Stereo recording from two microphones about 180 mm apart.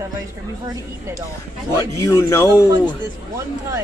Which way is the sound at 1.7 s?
15° left (ahead or behind).